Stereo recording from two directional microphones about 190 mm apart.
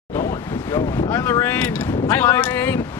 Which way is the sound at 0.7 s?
20° left (ahead or behind).